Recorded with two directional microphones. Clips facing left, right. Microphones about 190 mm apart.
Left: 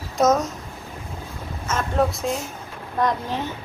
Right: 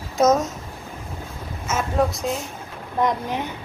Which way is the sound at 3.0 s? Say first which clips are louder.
Right 1 dB; 15° right (ahead or behind).